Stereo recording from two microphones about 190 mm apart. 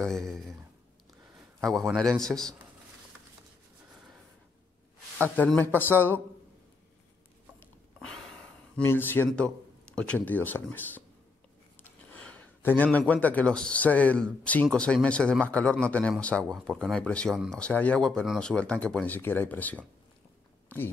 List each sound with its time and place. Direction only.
0.0 s speech: centre (ahead or behind)
1.6 s a man's voice: centre (ahead or behind)
5.3 s speech: 10° left (ahead or behind)
8.0 s a man's voice: 5° left (ahead or behind)